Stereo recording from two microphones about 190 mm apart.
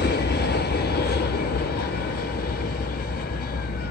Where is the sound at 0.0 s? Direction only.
60° left (ahead or behind).